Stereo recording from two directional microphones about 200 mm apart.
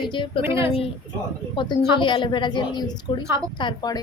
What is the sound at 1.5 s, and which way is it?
A woman's voice, 25° left (ahead or behind).